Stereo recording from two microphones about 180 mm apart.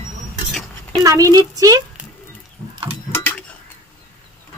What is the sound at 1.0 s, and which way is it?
Speech, 20° right (ahead or behind).